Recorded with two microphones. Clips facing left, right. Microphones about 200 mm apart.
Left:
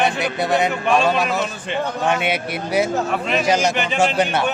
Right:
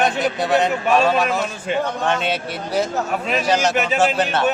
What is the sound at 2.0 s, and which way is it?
Speech, 10° left (ahead or behind).